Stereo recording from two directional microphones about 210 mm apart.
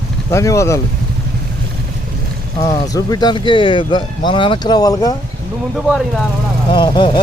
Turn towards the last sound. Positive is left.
turn(degrees=20)  # may be behind; listen again after turning